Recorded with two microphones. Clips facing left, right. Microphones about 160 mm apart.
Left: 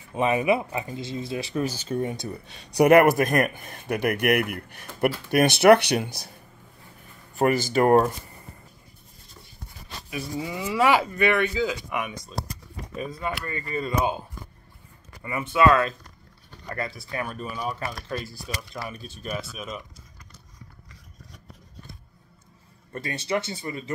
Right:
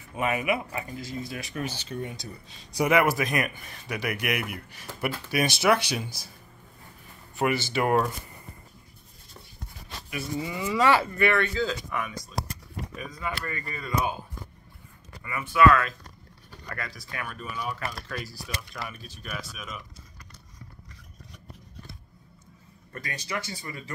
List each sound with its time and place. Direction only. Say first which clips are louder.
0.1 s speech: left 5 dB; 25° left (ahead or behind); by 2.2 s 45° left (ahead or behind)
2.4 s speech: left 8 dB; 65° left (ahead or behind)
7.3 s speech: left 5 dB; 40° left (ahead or behind)
10.0 s speech: left 1 dB; 20° left (ahead or behind)
12.9 s speech: left 5 dB; 30° left (ahead or behind)
15.2 s speech: left 1 dB; 25° left (ahead or behind)
22.9 s speech: left 7 dB; 25° left (ahead or behind)